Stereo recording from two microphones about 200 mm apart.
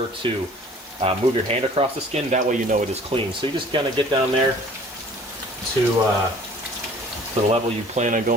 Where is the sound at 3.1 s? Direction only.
25° right (ahead or behind).